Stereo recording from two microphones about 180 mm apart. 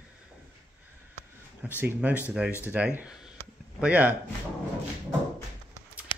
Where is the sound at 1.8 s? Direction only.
10° right (ahead or behind).